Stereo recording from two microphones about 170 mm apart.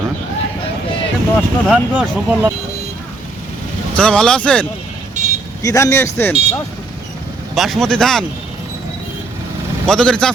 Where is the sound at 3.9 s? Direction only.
5° left (ahead or behind).